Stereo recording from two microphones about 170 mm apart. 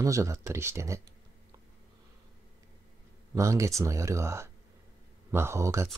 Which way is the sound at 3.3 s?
20° right (ahead or behind).